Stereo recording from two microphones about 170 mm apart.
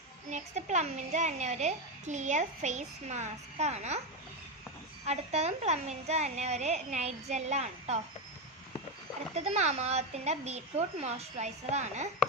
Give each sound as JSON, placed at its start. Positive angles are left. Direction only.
{"t": 0.3, "sound": "a child's voice", "side_deg": -45}
{"t": 5.0, "sound": "a woman's voice", "side_deg": -40}
{"t": 9.3, "sound": "a woman's voice", "side_deg": -40}